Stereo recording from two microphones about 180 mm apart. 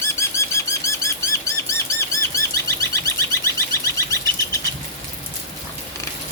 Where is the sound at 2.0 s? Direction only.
15° left (ahead or behind).